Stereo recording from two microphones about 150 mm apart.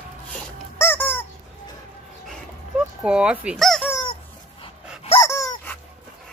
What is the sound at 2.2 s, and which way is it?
Dog, 5° right (ahead or behind).